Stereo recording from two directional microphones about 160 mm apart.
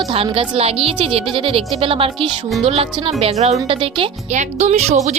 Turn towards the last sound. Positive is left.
turn(degrees=-45)  # may be behind; listen again after turning